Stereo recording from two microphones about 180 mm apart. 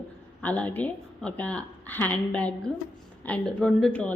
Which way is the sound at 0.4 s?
10° left (ahead or behind).